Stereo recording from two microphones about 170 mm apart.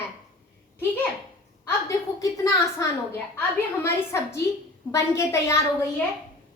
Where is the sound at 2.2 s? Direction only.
20° left (ahead or behind).